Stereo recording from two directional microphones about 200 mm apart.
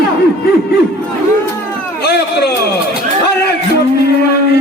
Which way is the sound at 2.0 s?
55° left (ahead or behind).